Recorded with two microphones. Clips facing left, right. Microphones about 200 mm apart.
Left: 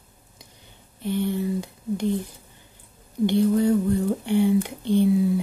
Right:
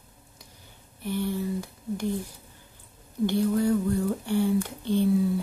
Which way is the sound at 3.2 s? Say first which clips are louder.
Left 4 dB; 20° left (ahead or behind).